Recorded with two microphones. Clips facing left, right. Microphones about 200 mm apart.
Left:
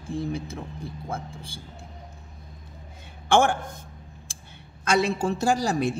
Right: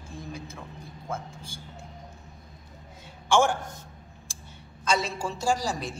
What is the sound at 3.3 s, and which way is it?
Speech, 55° left (ahead or behind).